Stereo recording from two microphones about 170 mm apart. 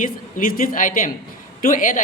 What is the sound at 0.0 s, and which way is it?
Speech, 50° left (ahead or behind).